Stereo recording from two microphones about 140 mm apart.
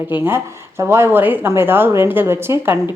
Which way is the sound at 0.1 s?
15° right (ahead or behind).